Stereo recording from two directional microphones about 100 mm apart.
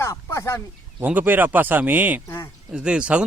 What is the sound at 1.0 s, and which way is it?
Speech, 15° right (ahead or behind).